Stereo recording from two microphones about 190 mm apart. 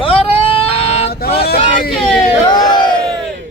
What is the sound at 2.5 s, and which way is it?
Speech, 20° left (ahead or behind).